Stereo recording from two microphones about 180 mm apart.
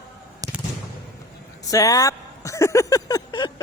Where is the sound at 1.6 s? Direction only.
20° left (ahead or behind).